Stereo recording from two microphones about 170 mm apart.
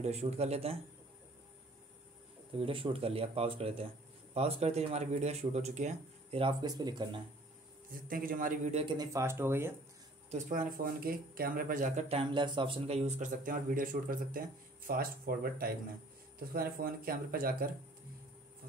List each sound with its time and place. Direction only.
0.0 s speech: 40° right (ahead or behind)
2.5 s speech: 30° right (ahead or behind)
8.1 s speech: 55° right (ahead or behind)
8.6 s speech: 35° right (ahead or behind)
8.9 s speech: 20° right (ahead or behind)
10.3 s speech: 50° right (ahead or behind)
12.1 s speech: 30° right (ahead or behind); by 17.6 s 60° right (ahead or behind)